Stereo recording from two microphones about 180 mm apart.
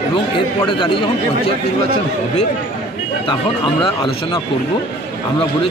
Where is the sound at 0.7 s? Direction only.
25° left (ahead or behind).